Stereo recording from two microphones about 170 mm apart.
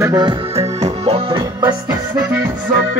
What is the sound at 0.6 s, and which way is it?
Music, 40° right (ahead or behind).